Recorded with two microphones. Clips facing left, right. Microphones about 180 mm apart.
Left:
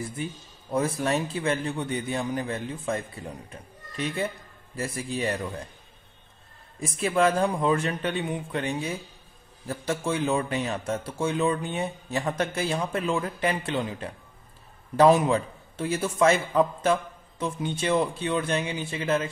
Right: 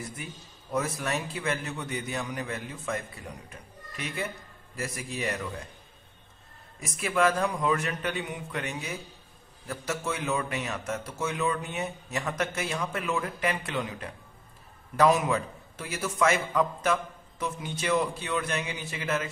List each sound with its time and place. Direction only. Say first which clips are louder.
0.0 s a man's voice: left 6 dB; 25° left (ahead or behind)
6.8 s a man's voice: left 3 dB; 30° left (ahead or behind)